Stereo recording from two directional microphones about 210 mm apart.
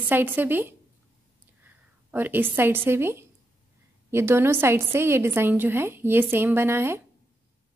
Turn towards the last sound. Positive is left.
turn(degrees=-10)  # may be behind; listen again after turning